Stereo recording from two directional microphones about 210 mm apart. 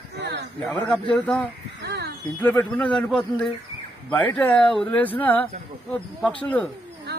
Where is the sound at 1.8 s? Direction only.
55° right (ahead or behind).